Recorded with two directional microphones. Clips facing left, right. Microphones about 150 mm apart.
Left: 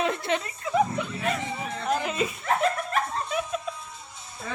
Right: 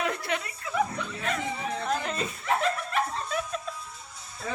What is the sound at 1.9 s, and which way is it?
Music, 10° left (ahead or behind).